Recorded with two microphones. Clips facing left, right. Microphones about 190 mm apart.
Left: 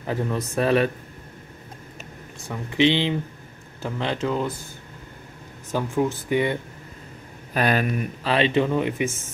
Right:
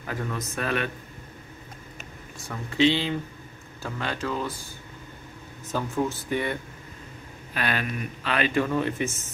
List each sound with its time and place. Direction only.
0.0 s speech: 25° left (ahead or behind)
2.4 s speech: 15° left (ahead or behind)
5.7 s speech: 10° left (ahead or behind)
7.5 s speech: 40° left (ahead or behind); by 9.1 s 15° left (ahead or behind)